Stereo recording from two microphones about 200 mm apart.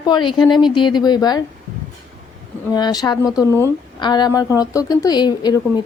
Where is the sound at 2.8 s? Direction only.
20° left (ahead or behind).